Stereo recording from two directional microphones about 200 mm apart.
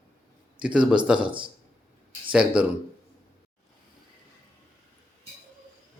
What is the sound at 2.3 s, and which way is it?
Speech, 5° right (ahead or behind).